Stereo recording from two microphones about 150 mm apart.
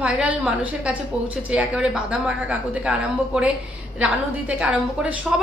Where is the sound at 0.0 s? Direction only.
10° right (ahead or behind).